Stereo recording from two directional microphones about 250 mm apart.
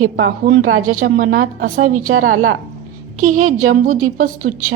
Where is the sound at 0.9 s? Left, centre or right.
Right.